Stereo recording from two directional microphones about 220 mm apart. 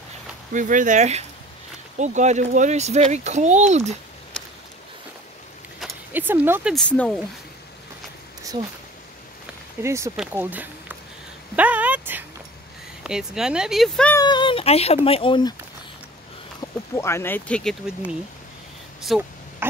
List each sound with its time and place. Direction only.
0.5 s speech: 35° right (ahead or behind)
5.8 s a sound: 5° right (ahead or behind)
6.7 s speech: 5° left (ahead or behind)
9.8 s speech: 15° right (ahead or behind)
11.5 s a sound: 5° right (ahead or behind)
13.0 s speech: 5° right (ahead or behind)
14.1 s speech: 20° left (ahead or behind)
16.9 s speech: 10° left (ahead or behind)